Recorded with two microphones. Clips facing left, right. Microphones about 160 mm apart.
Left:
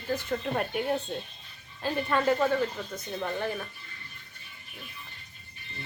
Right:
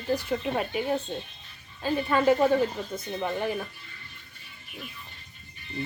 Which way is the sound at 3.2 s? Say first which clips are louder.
Right 2 dB; 10° right (ahead or behind).